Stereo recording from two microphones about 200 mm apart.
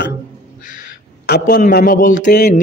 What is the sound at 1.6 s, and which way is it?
A man's voice, 50° left (ahead or behind).